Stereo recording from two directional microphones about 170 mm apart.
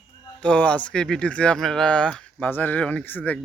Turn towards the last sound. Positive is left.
turn(degrees=10)  # may be behind; listen again after turning